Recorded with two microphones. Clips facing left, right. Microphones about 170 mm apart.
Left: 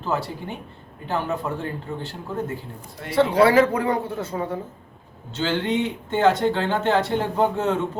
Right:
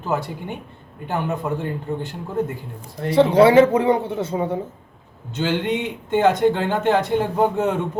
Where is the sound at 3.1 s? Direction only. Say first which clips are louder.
Right 4 dB; 20° right (ahead or behind).